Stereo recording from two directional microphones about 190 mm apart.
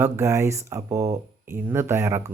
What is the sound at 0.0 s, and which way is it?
Speech, 15° right (ahead or behind).